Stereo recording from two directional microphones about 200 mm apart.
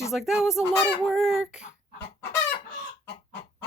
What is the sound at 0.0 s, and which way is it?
Speech, centre (ahead or behind).